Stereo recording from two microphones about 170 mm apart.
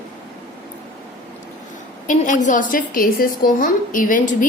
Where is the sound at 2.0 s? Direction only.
50° left (ahead or behind).